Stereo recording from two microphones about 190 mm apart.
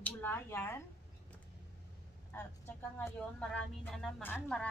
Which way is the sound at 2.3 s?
10° left (ahead or behind).